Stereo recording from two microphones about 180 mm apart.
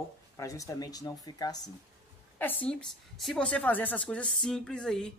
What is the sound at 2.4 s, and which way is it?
Speech, 10° left (ahead or behind).